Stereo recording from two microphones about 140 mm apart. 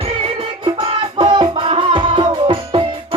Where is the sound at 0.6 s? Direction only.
40° right (ahead or behind).